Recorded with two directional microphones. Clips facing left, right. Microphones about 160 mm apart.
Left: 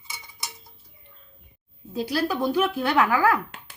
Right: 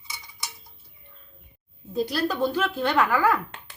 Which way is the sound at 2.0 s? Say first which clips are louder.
Even; 10° left (ahead or behind).